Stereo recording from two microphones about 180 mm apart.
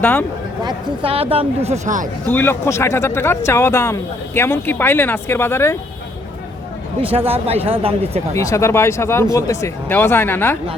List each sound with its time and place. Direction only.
0.0 s speech: 10° left (ahead or behind)
0.6 s speech: 25° right (ahead or behind); by 2.0 s 40° right (ahead or behind)
2.2 s speech: 10° left (ahead or behind)
7.0 s speech: 30° right (ahead or behind)
8.4 s speech: 15° left (ahead or behind)